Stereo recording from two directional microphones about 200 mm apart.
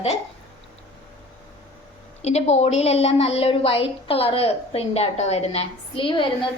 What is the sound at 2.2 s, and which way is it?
A woman's voice, 35° left (ahead or behind).